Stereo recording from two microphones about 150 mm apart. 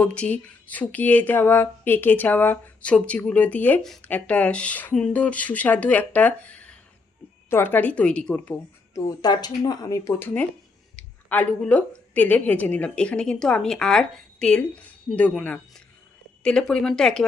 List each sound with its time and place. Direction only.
0.0 s speech: 5° left (ahead or behind)
9.0 s speech: 25° left (ahead or behind); by 17.2 s 5° left (ahead or behind)